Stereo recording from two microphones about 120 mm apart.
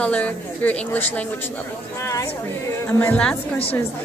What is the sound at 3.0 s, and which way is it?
Speech, 10° left (ahead or behind).